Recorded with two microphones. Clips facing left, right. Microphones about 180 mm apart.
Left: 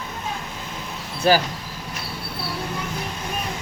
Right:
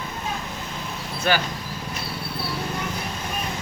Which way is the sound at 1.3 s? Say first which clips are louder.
Left 5 dB; 35° left (ahead or behind).